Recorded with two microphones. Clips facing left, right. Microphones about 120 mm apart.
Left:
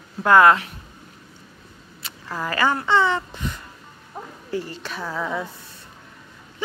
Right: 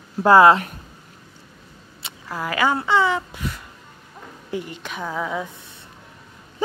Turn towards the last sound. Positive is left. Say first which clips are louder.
# right 1 dB
turn(degrees=-10)  # may be behind; listen again after turning